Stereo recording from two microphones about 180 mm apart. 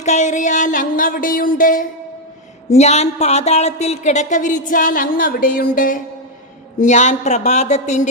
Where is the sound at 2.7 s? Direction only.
40° left (ahead or behind).